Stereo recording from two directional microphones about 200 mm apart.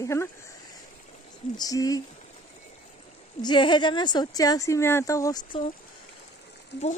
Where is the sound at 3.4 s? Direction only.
20° left (ahead or behind).